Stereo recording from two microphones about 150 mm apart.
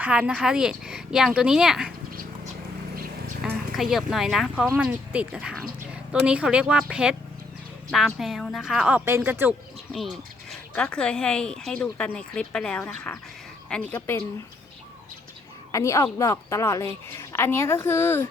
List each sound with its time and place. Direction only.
0.0 s speech: 5° right (ahead or behind)
3.4 s a sound: centre (ahead or behind)
3.8 s speech: centre (ahead or behind)
9.9 s a woman's voice: centre (ahead or behind)
15.7 s a woman's voice: 20° left (ahead or behind)